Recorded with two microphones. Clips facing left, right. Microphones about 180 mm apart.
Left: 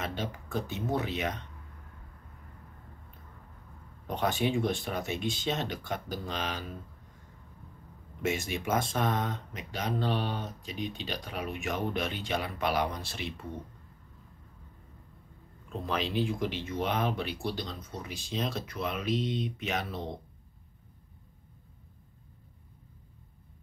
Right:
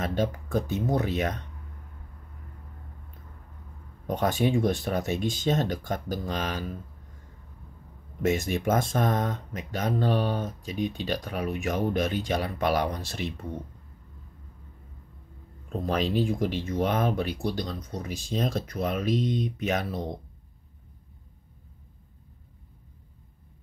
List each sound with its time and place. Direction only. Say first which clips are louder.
0.0 s speech: right 8 dB; 45° right (ahead or behind)
4.1 s speech: right 4 dB; 45° right (ahead or behind)
8.2 s speech: right 6 dB; 45° right (ahead or behind)
15.7 s speech: right 5 dB; 40° right (ahead or behind)